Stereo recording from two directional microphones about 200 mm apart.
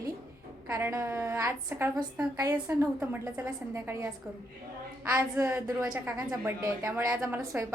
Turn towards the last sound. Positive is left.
turn(degrees=-15)  # may be behind; listen again after turning